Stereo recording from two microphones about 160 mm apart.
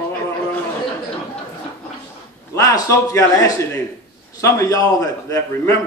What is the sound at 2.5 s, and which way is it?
Speech, 20° left (ahead or behind).